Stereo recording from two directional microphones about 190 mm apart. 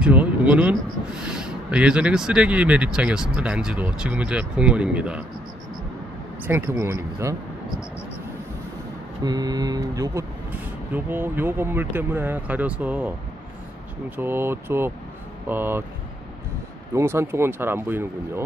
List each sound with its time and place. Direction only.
0.0 s speech: 5° right (ahead or behind)
6.4 s speech: 10° right (ahead or behind)
9.2 s speech: 20° right (ahead or behind)
14.1 s speech: 10° right (ahead or behind)
16.9 s speech: 15° right (ahead or behind)